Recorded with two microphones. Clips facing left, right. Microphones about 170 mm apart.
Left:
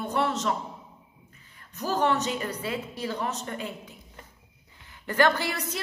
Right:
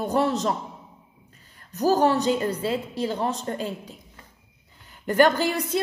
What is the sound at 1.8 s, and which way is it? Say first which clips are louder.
A woman's voice: right 6 dB; 40° right (ahead or behind).